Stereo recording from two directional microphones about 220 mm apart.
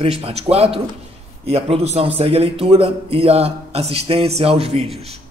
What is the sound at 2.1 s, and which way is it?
Speech, 25° right (ahead or behind).